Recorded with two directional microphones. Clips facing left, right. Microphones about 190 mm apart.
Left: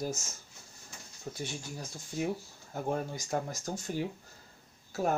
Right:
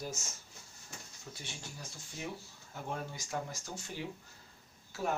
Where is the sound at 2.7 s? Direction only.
45° left (ahead or behind).